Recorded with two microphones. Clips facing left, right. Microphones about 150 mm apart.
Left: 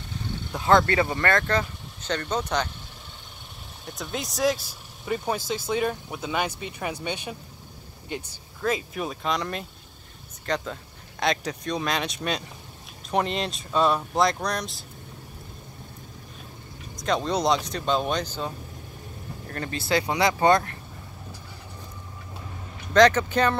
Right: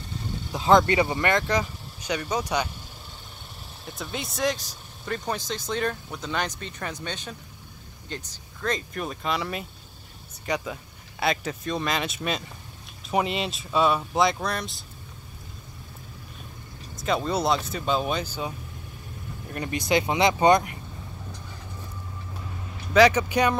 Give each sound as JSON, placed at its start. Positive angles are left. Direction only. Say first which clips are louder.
{"t": 0.6, "sound": "speech", "louder": "right 1 dB", "side_deg": -20}
{"t": 3.8, "sound": "speech", "louder": "left 1 dB", "side_deg": 0}
{"t": 16.9, "sound": "speech", "louder": "even", "side_deg": -5}
{"t": 22.9, "sound": "speech", "louder": "even", "side_deg": -10}